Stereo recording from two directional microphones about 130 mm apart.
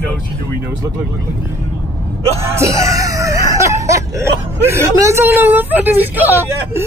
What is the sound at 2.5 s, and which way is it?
Speech, 25° right (ahead or behind).